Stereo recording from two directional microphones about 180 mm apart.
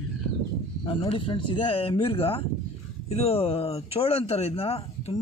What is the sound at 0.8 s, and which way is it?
Speech, 30° left (ahead or behind).